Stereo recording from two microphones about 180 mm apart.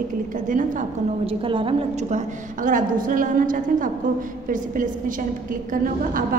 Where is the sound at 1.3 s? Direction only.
30° right (ahead or behind).